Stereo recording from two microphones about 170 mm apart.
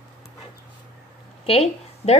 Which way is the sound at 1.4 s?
35° left (ahead or behind).